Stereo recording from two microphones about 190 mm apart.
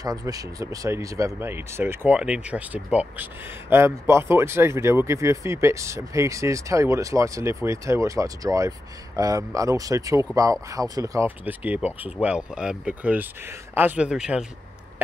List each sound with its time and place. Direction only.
0.0 s speech: 20° right (ahead or behind)